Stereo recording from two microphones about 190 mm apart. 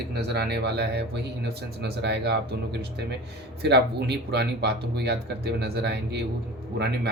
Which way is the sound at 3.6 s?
60° right (ahead or behind).